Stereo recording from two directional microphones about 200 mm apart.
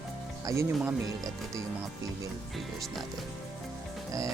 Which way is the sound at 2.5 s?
Centre (ahead or behind).